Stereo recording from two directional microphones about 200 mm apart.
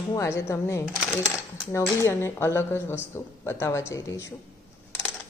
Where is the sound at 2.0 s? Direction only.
10° left (ahead or behind).